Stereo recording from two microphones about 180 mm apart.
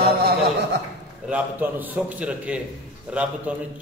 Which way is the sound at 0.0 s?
60° right (ahead or behind).